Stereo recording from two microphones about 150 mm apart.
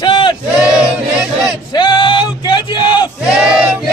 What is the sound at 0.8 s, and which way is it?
Battle cry, 5° right (ahead or behind).